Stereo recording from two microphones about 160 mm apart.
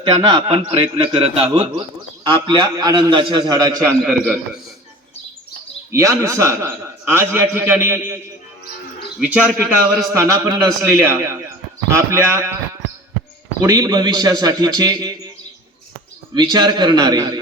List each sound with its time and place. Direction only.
0.0 s a man's voice: 30° right (ahead or behind)
5.9 s a man's voice: 20° right (ahead or behind)
9.3 s a man's voice: 5° right (ahead or behind)
10.2 s a man's voice: 20° right (ahead or behind)
13.6 s a man's voice: 25° right (ahead or behind)
16.3 s a man's voice: 25° right (ahead or behind)